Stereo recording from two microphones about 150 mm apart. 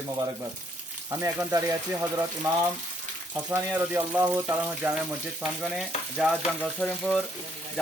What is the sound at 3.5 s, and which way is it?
Speech, 15° right (ahead or behind).